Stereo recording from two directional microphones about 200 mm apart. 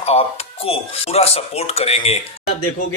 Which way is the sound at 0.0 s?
30° left (ahead or behind).